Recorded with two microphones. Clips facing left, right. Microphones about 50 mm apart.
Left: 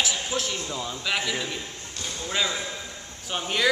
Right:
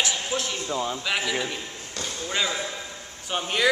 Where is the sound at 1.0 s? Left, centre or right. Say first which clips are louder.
Right 1 dB; centre.